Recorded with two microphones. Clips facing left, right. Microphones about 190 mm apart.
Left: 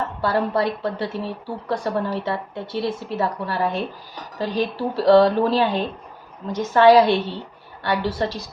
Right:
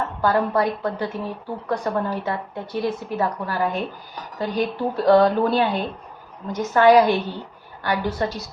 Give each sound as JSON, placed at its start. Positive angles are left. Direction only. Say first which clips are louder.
{"t": 0.2, "sound": "a woman's voice", "louder": "right 1 dB", "side_deg": 30}